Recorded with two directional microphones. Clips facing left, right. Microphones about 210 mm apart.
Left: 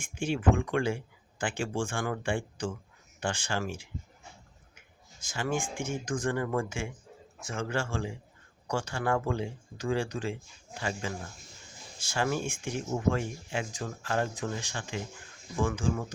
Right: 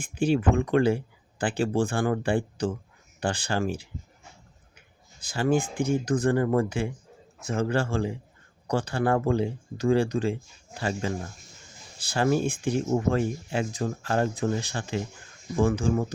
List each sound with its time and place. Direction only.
0.0 s speech: 35° right (ahead or behind)
5.2 s speech: 35° right (ahead or behind)